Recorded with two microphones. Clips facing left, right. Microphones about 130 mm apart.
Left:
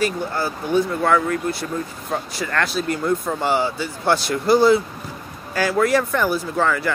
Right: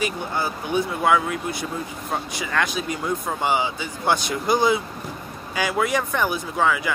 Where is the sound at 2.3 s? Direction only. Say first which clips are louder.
Left 2 dB; 5° right (ahead or behind).